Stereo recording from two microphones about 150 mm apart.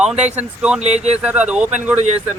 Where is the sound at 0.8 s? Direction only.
50° right (ahead or behind).